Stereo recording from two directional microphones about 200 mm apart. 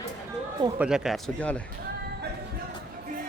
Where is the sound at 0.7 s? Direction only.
5° right (ahead or behind).